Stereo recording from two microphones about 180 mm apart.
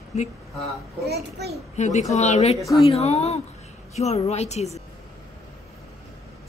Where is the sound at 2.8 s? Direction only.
35° left (ahead or behind).